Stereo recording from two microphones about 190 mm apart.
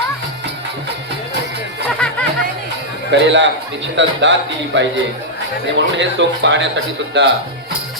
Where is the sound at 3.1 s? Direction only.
70° right (ahead or behind).